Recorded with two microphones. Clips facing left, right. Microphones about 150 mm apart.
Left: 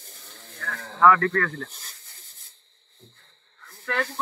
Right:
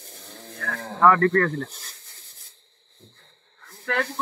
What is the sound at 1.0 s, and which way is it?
Speech, 40° right (ahead or behind).